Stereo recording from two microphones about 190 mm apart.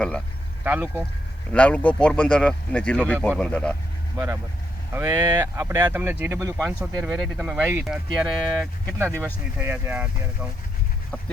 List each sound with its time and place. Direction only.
0.6 s speech: 10° right (ahead or behind)
1.5 s speech: 5° left (ahead or behind)
4.9 s speech: 15° right (ahead or behind)
6.7 s speech: 5° right (ahead or behind)
9.6 s speech: 10° right (ahead or behind)